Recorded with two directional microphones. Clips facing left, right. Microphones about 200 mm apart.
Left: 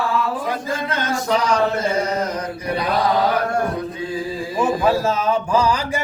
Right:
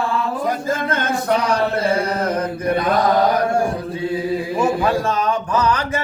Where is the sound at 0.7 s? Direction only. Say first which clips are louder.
Right 2 dB; 50° right (ahead or behind).